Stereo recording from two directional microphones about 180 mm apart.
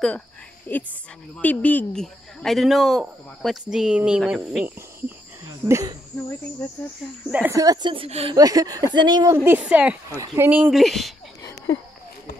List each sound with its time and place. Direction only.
0.7 s a woman's voice: 10° left (ahead or behind); by 5.1 s 5° right (ahead or behind)
5.7 s speech: 20° right (ahead or behind)
7.2 s speech: 10° right (ahead or behind)
7.5 s a woman's voice: 20° right (ahead or behind)
8.4 s a woman's voice: 20° right (ahead or behind); by 11.1 s centre (ahead or behind)